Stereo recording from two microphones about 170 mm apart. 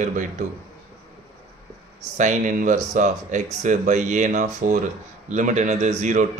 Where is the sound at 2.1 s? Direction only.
45° right (ahead or behind).